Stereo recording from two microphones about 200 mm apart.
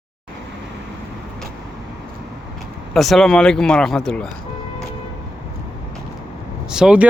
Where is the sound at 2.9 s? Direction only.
Centre (ahead or behind).